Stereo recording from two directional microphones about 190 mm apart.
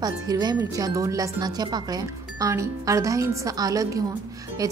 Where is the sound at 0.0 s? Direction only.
20° right (ahead or behind).